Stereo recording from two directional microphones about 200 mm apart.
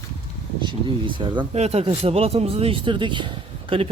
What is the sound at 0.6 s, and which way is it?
Speech, 25° right (ahead or behind).